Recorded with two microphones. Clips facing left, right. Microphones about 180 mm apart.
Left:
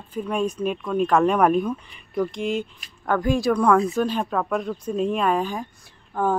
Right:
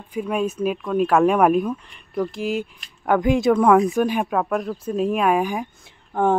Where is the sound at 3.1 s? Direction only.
20° right (ahead or behind).